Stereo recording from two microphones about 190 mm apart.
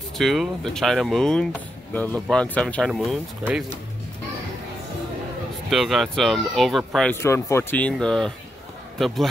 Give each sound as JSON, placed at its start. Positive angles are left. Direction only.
{"t": 0.2, "sound": "speech", "side_deg": 0}
{"t": 5.7, "sound": "speech", "side_deg": 0}
{"t": 7.2, "sound": "speech", "side_deg": 15}